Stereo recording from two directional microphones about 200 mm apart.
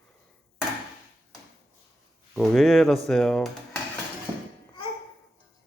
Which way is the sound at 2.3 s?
Centre (ahead or behind).